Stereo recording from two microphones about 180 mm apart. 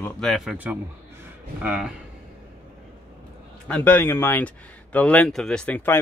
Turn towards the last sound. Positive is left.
turn(degrees=10)  # may be behind; listen again after turning